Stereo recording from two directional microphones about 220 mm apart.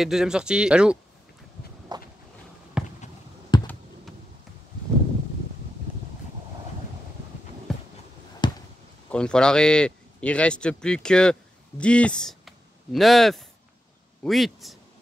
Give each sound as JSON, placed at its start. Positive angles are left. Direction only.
{"t": 0.0, "sound": "speech", "side_deg": 0}
{"t": 1.9, "sound": "a sound", "side_deg": -20}
{"t": 2.8, "sound": "basketball bounce", "side_deg": -5}
{"t": 3.5, "sound": "computer keyboard", "side_deg": 20}
{"t": 7.7, "sound": "a sound", "side_deg": 0}
{"t": 8.4, "sound": "basketball bounce", "side_deg": 20}
{"t": 9.1, "sound": "speech", "side_deg": 5}